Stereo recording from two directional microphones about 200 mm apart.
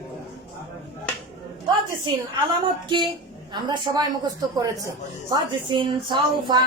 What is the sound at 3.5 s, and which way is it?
Speech, 20° right (ahead or behind).